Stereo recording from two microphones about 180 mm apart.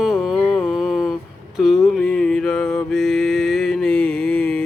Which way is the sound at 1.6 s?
Centre (ahead or behind).